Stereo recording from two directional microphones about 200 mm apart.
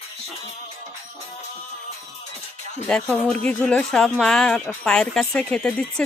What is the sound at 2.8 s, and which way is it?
Speech, 5° left (ahead or behind).